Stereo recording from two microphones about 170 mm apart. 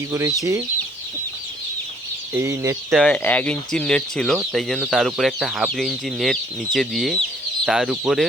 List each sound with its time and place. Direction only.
0.1 s speech: 15° right (ahead or behind)
2.3 s speech: 15° right (ahead or behind)
2.9 s speech: 5° left (ahead or behind)